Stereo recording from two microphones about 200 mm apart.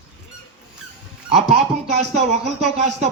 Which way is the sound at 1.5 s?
35° right (ahead or behind).